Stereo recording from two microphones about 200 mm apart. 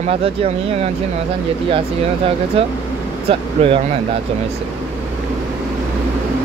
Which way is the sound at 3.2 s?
30° right (ahead or behind).